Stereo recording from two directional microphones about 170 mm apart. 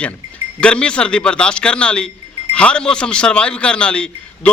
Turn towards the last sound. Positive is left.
turn(degrees=5)  # may be behind; listen again after turning